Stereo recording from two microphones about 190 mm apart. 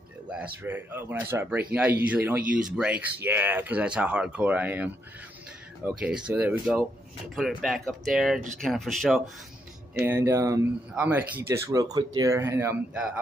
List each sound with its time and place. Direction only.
0.3 s speech: 10° right (ahead or behind)
9.9 s speech: 15° right (ahead or behind)